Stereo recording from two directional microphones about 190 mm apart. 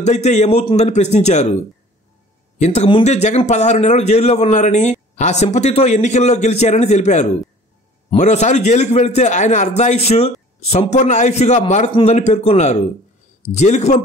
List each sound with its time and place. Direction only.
0.0 s a man's voice: 35° left (ahead or behind)